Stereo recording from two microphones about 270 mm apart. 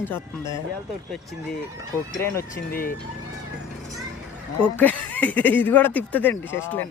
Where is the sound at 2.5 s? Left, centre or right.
Left.